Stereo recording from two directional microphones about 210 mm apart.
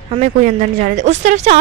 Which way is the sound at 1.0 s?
35° right (ahead or behind).